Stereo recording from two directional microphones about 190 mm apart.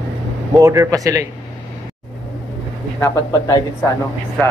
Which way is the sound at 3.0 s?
15° left (ahead or behind).